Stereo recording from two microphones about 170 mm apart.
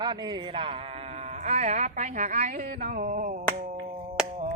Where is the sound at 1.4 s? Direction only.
40° right (ahead or behind).